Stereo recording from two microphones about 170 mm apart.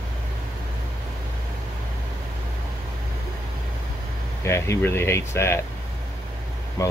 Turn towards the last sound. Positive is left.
turn(degrees=20)  # may be behind; listen again after turning